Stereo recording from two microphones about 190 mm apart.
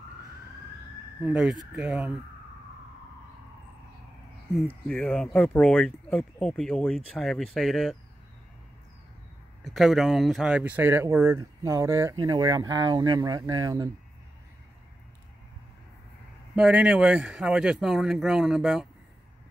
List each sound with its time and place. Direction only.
1.2 s speech: 5° right (ahead or behind)
4.6 s speech: centre (ahead or behind)
9.6 s speech: centre (ahead or behind); by 13.9 s 20° right (ahead or behind)
16.5 s speech: 5° right (ahead or behind)